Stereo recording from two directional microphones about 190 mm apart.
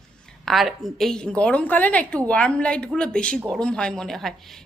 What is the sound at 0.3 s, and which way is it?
A woman's voice, centre (ahead or behind).